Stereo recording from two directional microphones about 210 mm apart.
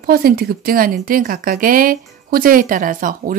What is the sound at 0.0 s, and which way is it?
Speech, 45° right (ahead or behind).